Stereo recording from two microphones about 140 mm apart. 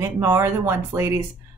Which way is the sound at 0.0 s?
15° right (ahead or behind).